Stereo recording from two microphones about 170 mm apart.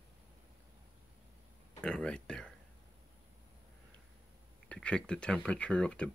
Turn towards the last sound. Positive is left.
turn(degrees=5)  # may be behind; listen again after turning